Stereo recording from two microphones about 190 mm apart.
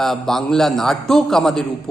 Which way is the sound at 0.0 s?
Centre (ahead or behind).